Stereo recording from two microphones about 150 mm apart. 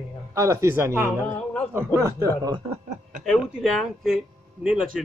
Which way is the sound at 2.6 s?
55° right (ahead or behind).